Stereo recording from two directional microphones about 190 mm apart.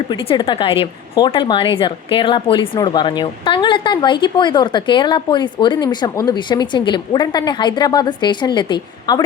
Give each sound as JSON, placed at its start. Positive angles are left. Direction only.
{"t": 0.1, "sound": "a woman's voice", "side_deg": 25}